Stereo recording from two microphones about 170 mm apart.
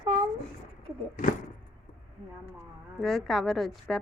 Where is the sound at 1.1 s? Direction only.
50° left (ahead or behind).